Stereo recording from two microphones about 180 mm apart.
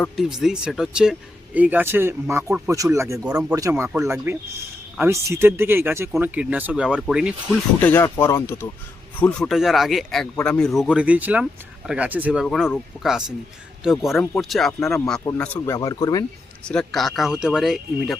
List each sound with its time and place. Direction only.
0.0 s speech: centre (ahead or behind)
7.8 s speech: 10° left (ahead or behind)
9.5 s speech: centre (ahead or behind)
10.8 s speech: 5° right (ahead or behind)
15.2 s speech: 15° left (ahead or behind)
16.6 s speech: 5° left (ahead or behind)